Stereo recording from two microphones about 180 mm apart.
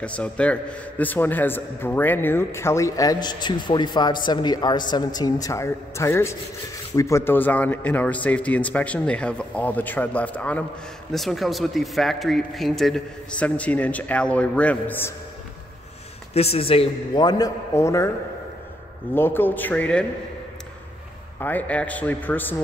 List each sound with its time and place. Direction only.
0.0 s a man's voice: 5° left (ahead or behind)
16.3 s a man's voice: 35° left (ahead or behind); by 18.1 s 15° left (ahead or behind)
19.1 s a man's voice: 10° left (ahead or behind)
21.4 s a man's voice: 10° left (ahead or behind)